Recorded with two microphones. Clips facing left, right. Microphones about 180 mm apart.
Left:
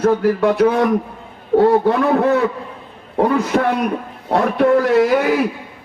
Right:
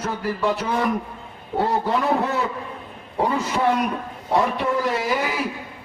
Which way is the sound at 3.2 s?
60° left (ahead or behind).